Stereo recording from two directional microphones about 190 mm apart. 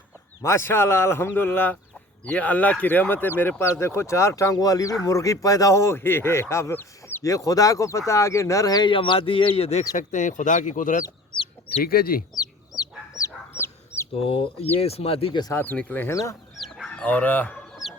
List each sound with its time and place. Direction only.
0.4 s speech: 15° left (ahead or behind); by 11.0 s 45° left (ahead or behind)
11.0 s chicken: 25° left (ahead or behind)
11.8 s speech: 50° left (ahead or behind)
12.7 s chicken: 15° left (ahead or behind)
14.1 s speech: 30° left (ahead or behind); by 16.3 s 15° left (ahead or behind)
16.6 s chicken: centre (ahead or behind)